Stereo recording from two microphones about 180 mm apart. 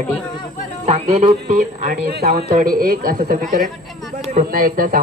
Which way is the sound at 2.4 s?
55° right (ahead or behind).